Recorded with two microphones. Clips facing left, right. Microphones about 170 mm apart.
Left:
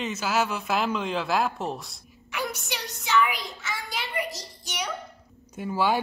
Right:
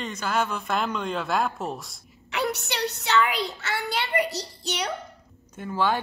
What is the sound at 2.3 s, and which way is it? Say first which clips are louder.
A woman's voice: right 4 dB; 70° right (ahead or behind).